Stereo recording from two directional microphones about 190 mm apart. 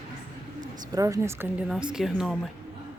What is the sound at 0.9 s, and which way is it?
Speech, 15° right (ahead or behind).